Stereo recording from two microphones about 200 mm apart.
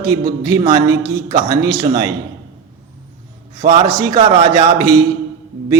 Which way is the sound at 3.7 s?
20° right (ahead or behind).